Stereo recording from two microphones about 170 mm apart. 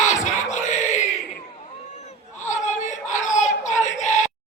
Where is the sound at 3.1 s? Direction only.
45° left (ahead or behind).